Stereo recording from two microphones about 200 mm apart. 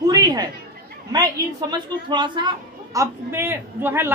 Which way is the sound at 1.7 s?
25° right (ahead or behind).